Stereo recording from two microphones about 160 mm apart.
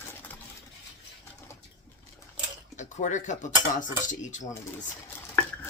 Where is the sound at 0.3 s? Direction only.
10° left (ahead or behind).